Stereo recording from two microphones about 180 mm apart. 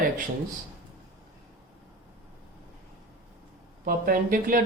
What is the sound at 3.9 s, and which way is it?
Speech, 50° right (ahead or behind).